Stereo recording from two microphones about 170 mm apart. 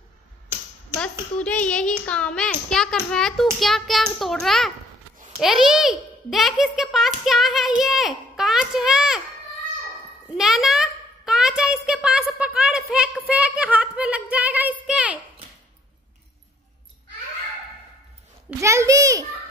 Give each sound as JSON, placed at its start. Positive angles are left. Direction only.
{"t": 0.9, "sound": "a child's voice", "side_deg": 5}
{"t": 10.3, "sound": "a child's voice", "side_deg": 0}
{"t": 18.6, "sound": "a child's voice", "side_deg": -15}